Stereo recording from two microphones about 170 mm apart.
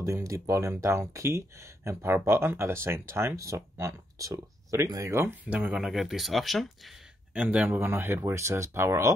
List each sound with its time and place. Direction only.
0.0 s speech: 20° right (ahead or behind)